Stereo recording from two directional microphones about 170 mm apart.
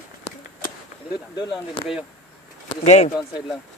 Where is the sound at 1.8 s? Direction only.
30° left (ahead or behind).